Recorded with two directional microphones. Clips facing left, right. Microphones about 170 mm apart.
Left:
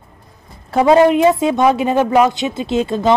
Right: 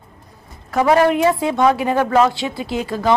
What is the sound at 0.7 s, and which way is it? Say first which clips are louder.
A woman's voice: left 4 dB; 25° left (ahead or behind).